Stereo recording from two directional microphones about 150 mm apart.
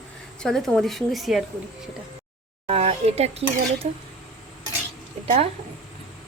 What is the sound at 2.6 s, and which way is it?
Speech, 45° right (ahead or behind).